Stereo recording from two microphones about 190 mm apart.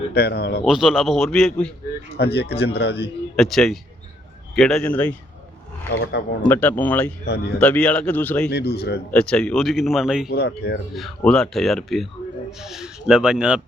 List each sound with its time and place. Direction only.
0.1 s speech: 55° left (ahead or behind)
0.6 s speech: 5° right (ahead or behind)
2.1 s speech: 60° left (ahead or behind)
3.3 s speech: centre (ahead or behind)
6.0 s speech: 65° left (ahead or behind)
6.5 s speech: 10° left (ahead or behind)
8.4 s speech: 55° left (ahead or behind)
9.1 s speech: 5° left (ahead or behind)
10.2 s speech: 55° left (ahead or behind)
10.9 s speech: 5° left (ahead or behind)